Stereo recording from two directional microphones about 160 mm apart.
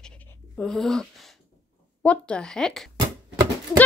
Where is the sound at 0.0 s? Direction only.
10° left (ahead or behind).